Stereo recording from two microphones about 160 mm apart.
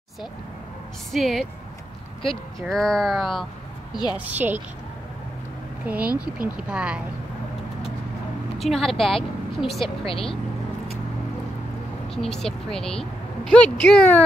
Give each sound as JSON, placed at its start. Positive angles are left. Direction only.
{"t": 1.1, "sound": "speech", "side_deg": 0}
{"t": 4.2, "sound": "speech", "side_deg": -10}
{"t": 5.9, "sound": "speech", "side_deg": -10}
{"t": 8.5, "sound": "speech", "side_deg": 0}
{"t": 10.0, "sound": "speech", "side_deg": 35}
{"t": 12.2, "sound": "speech", "side_deg": 5}